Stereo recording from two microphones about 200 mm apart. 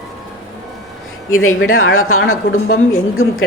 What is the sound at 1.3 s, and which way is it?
A woman's voice, 90° left.